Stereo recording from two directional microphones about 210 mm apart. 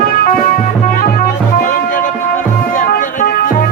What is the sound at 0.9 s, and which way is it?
Music, 45° left (ahead or behind).